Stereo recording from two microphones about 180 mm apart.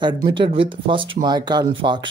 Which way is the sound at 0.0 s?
25° right (ahead or behind).